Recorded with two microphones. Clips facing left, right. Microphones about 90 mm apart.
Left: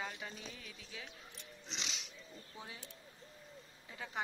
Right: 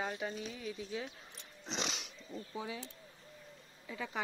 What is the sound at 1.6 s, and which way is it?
Dog, 45° right (ahead or behind).